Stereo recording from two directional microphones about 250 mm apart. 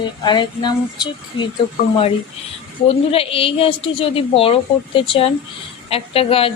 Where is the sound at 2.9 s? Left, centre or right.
Left.